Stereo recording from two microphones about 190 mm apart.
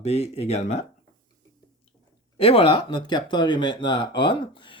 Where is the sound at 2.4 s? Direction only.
30° left (ahead or behind).